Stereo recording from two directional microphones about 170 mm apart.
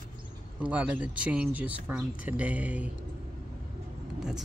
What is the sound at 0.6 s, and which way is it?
Speech, 10° right (ahead or behind).